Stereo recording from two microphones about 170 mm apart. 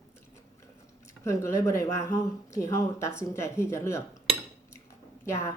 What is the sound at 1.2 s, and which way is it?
Speech, 15° left (ahead or behind).